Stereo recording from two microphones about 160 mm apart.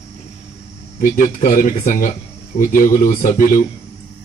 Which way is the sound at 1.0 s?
60° left (ahead or behind).